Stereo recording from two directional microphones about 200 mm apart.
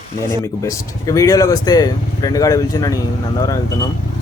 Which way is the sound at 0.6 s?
15° left (ahead or behind).